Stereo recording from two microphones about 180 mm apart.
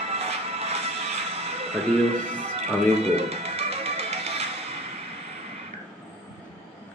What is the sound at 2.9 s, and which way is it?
Music, 35° right (ahead or behind).